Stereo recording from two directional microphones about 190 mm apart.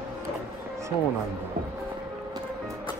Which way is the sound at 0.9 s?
30° left (ahead or behind).